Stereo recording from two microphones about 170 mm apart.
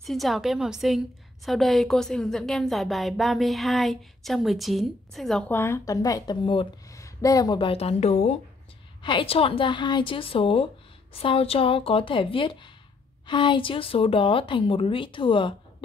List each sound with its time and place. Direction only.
0.0 s a woman's voice: centre (ahead or behind)
5.5 s speech: 15° left (ahead or behind); by 15.5 s 30° left (ahead or behind)